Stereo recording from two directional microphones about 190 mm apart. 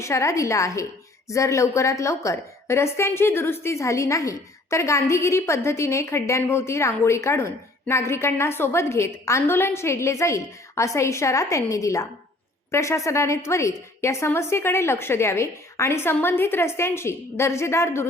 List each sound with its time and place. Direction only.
0.0 s a woman's voice: 15° left (ahead or behind)